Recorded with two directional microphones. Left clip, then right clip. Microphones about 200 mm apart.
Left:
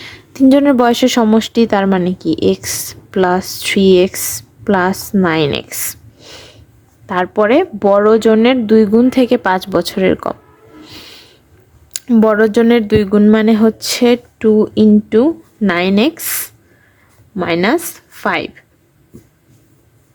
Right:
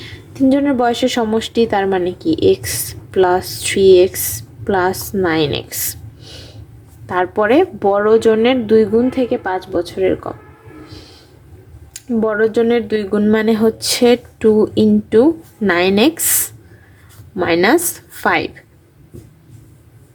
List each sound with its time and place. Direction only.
0.0 s a woman's voice: 30° left (ahead or behind)
11.9 s speech: 30° left (ahead or behind); by 16.2 s 10° left (ahead or behind)
17.3 s a woman's voice: 15° left (ahead or behind)